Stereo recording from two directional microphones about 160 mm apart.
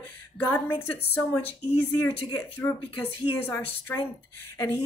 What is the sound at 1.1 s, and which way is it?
A woman's voice, 15° left (ahead or behind).